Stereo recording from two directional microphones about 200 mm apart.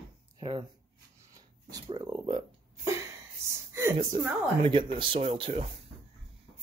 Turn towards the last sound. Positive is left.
turn(degrees=-30)  # may be behind; listen again after turning